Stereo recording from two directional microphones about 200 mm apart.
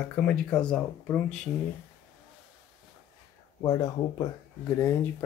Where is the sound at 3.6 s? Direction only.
20° left (ahead or behind).